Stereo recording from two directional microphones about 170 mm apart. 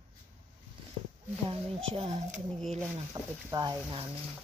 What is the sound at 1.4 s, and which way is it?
Speech, 35° right (ahead or behind).